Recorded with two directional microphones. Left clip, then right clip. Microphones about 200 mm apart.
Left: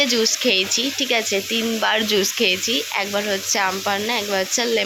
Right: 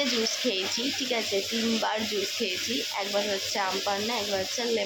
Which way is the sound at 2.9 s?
20° left (ahead or behind).